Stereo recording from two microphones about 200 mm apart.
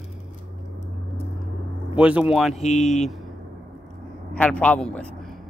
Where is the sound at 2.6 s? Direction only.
35° left (ahead or behind).